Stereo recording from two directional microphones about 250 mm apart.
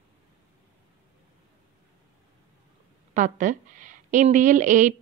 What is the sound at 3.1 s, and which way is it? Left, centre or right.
A woman's voice, right.